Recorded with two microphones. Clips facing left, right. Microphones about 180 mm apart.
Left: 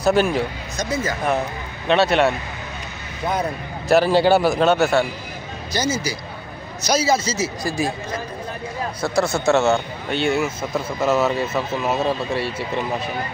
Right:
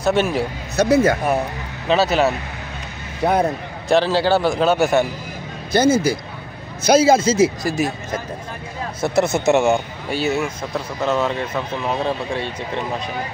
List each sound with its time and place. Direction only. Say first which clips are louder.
0.0 s speech: left 1 dB; centre (ahead or behind)
0.7 s speech: right 10 dB; 65° right (ahead or behind)
1.9 s speech: even; centre (ahead or behind)
3.2 s speech: right 6 dB; 65° right (ahead or behind)
3.9 s speech: left 1 dB; 15° left (ahead or behind)
4.7 s a man's voice: right 1 dB; 15° right (ahead or behind)
5.7 s a man's voice: right 8 dB; 55° right (ahead or behind)
7.6 s speech: right 2 dB; 20° right (ahead or behind)
9.0 s a man's voice: right 3 dB; 20° right (ahead or behind); by 12.8 s 5° left (ahead or behind)